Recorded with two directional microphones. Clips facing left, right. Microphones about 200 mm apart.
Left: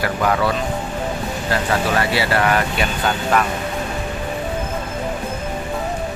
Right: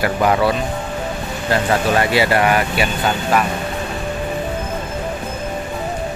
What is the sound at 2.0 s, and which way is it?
Speech, 15° right (ahead or behind).